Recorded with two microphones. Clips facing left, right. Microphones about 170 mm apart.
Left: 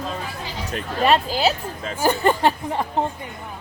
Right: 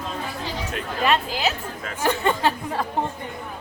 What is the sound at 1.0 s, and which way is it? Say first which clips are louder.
Speech: left 4 dB; 35° left (ahead or behind).